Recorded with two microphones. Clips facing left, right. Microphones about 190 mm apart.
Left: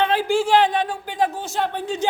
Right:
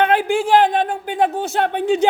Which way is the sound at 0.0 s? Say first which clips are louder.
Right 3 dB; 55° right (ahead or behind).